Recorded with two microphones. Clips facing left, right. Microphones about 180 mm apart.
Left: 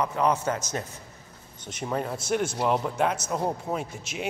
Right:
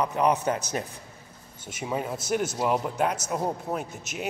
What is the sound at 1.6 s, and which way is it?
A man's voice, 5° right (ahead or behind).